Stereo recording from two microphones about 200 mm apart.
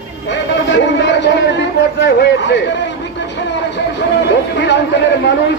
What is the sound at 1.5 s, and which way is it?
A man's voice, 60° left (ahead or behind).